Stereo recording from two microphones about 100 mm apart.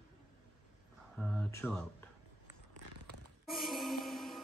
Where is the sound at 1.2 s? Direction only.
15° left (ahead or behind).